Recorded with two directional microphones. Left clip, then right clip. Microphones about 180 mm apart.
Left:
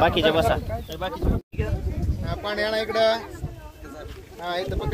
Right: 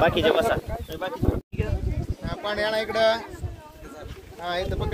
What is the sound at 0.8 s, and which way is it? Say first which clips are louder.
Speech: left 1 dB; 20° right (ahead or behind).